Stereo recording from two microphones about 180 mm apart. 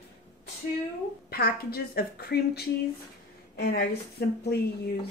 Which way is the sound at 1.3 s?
60° left (ahead or behind).